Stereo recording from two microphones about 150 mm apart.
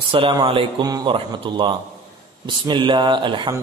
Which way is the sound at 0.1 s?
35° right (ahead or behind).